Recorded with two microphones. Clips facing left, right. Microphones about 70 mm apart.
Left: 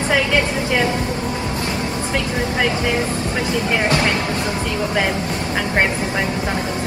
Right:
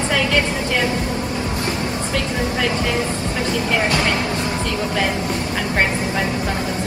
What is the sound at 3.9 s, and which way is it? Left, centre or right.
Speech, left.